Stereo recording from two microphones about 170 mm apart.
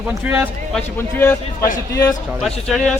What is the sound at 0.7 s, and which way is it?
A man's voice, 10° left (ahead or behind).